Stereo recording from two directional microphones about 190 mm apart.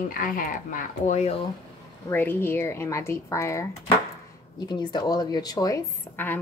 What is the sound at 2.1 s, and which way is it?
A woman's voice, 10° left (ahead or behind).